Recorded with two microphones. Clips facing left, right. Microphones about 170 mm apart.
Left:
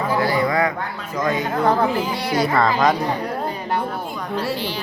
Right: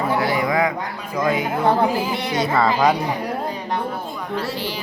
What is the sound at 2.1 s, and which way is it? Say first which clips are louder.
Speech: left 1 dB; 20° right (ahead or behind).